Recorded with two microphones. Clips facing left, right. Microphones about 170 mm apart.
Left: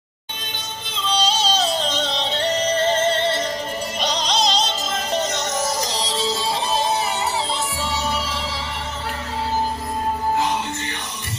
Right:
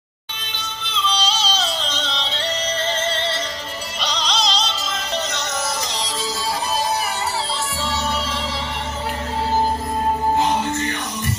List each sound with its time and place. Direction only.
0.8 s music: 45° left (ahead or behind)
5.9 s music: 30° left (ahead or behind)